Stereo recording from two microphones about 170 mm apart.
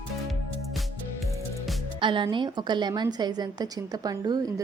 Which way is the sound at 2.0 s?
30° right (ahead or behind).